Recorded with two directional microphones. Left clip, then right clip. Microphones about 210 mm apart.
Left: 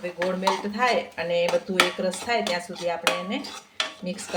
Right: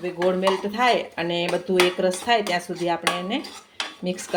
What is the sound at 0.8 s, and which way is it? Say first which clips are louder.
Speech: right 3 dB; 30° right (ahead or behind).